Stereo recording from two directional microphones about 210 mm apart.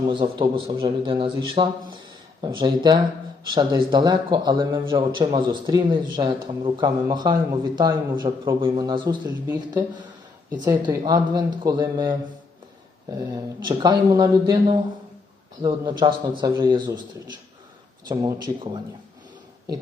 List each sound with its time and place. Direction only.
0.1 s a man's voice: 25° right (ahead or behind)
18.1 s speech: 20° right (ahead or behind)